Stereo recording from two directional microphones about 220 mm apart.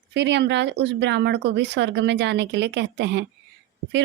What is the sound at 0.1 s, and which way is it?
Speech, 50° right (ahead or behind).